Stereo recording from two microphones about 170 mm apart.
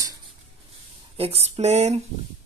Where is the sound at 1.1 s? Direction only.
35° right (ahead or behind).